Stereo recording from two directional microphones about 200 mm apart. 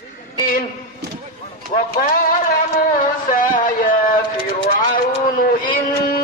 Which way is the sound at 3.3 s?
45° left (ahead or behind).